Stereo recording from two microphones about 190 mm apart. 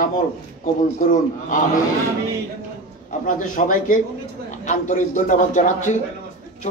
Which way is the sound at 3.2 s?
45° left (ahead or behind).